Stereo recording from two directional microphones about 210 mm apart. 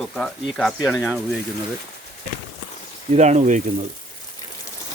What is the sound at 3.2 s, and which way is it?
Speech, 35° right (ahead or behind).